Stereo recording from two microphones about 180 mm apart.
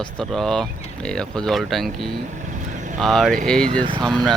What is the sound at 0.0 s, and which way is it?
Speech, 5° left (ahead or behind).